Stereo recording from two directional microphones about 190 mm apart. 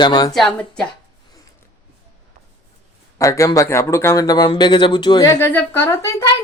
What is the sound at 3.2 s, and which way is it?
Speech, 15° left (ahead or behind).